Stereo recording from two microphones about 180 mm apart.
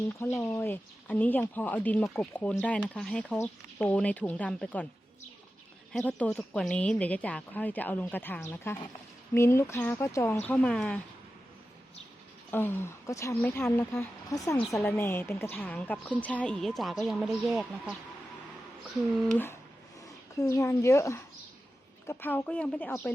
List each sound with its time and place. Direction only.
0.4 s a woman's voice: 10° left (ahead or behind)
5.9 s a woman's voice: 5° left (ahead or behind)
12.5 s a woman's voice: 10° left (ahead or behind)
19.3 s a woman's voice: 10° left (ahead or behind)